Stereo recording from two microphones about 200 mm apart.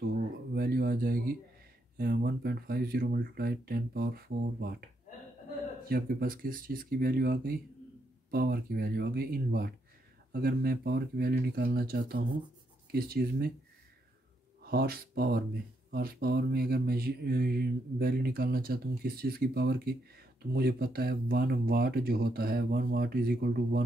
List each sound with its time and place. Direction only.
0.0 s a sound: 50° right (ahead or behind)
2.0 s mantra: 50° right (ahead or behind)
5.9 s mantra: 50° right (ahead or behind)
14.7 s mantra: 50° right (ahead or behind)